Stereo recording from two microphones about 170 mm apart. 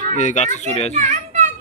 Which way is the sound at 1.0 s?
45° right (ahead or behind).